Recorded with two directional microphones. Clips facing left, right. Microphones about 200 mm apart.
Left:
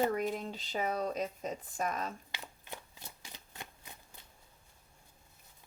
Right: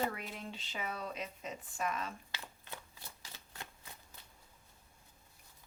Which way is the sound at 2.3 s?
15° left (ahead or behind).